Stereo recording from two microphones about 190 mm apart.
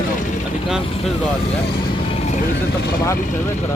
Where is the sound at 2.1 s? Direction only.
35° left (ahead or behind).